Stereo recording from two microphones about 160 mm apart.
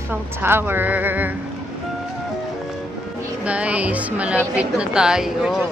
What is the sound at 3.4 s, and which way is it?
A woman's voice, 10° right (ahead or behind).